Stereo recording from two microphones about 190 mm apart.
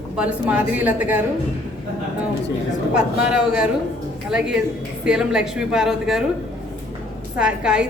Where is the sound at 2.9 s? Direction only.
5° right (ahead or behind).